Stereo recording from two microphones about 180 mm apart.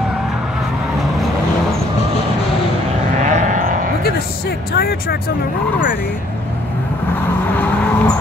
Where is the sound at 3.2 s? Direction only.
45° right (ahead or behind).